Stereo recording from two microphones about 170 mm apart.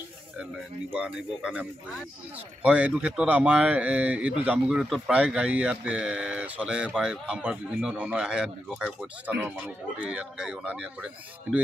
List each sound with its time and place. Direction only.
0.9 s a man's voice: 5° right (ahead or behind)